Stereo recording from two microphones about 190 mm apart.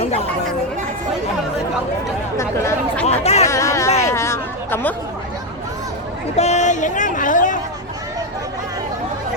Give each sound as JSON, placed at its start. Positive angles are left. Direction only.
{"t": 0.0, "sound": "chatter", "side_deg": 30}
{"t": 2.4, "sound": "chatter", "side_deg": 10}
{"t": 3.1, "sound": "chatter", "side_deg": 35}
{"t": 3.4, "sound": "a sound", "side_deg": 15}
{"t": 4.1, "sound": "chatter", "side_deg": 15}
{"t": 6.3, "sound": "a sound", "side_deg": 35}